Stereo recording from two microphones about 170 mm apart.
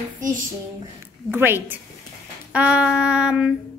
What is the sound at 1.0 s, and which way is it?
Speech, 15° right (ahead or behind).